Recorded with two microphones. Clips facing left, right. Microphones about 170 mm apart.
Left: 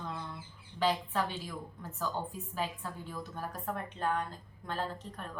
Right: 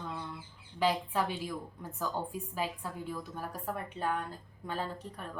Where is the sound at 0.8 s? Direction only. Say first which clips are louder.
Right 1 dB; 10° right (ahead or behind).